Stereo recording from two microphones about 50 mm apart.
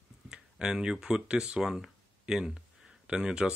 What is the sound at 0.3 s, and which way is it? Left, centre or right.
Speech, centre.